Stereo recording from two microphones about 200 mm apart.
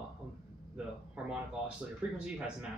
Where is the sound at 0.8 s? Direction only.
5° right (ahead or behind).